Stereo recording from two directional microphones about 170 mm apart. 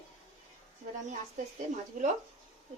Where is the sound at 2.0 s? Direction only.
50° right (ahead or behind).